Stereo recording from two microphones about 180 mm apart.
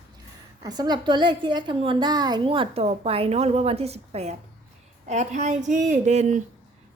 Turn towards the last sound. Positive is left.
turn(degrees=-40)  # may be behind; listen again after turning